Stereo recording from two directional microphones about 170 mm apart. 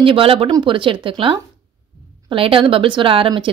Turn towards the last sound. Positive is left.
turn(degrees=-30)  # may be behind; listen again after turning